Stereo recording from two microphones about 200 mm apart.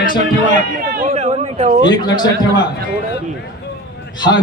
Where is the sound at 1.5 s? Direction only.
35° right (ahead or behind).